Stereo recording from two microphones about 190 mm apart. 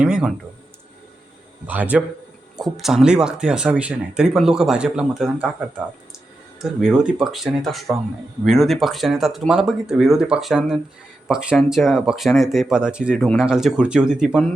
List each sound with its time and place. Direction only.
0.0 s speech: 5° right (ahead or behind)
1.6 s a man's voice: 10° right (ahead or behind)